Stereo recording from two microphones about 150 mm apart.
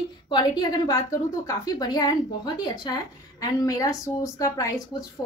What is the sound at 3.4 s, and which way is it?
A woman's voice, 25° left (ahead or behind).